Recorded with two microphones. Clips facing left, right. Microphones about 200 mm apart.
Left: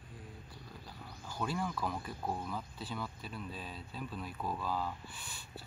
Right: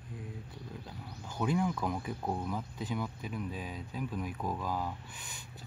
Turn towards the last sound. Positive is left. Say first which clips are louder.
# even
turn(degrees=-15)  # may be behind; listen again after turning